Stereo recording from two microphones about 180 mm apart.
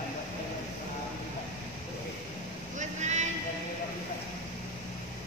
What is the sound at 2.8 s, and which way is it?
Vehicle, 40° right (ahead or behind).